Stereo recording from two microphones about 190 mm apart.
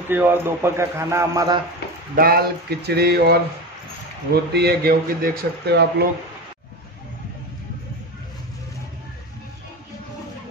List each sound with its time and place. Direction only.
0.1 s a man's voice: 10° right (ahead or behind)
2.1 s speech: 50° right (ahead or behind)
4.5 s speech: 60° right (ahead or behind)